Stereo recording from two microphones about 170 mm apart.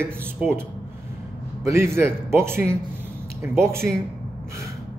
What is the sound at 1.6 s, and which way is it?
A man's voice, 15° right (ahead or behind).